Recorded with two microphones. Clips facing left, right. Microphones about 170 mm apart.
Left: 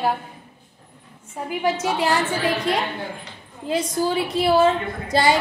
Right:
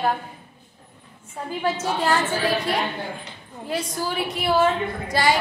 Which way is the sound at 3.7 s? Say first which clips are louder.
Left 5 dB; 25° left (ahead or behind).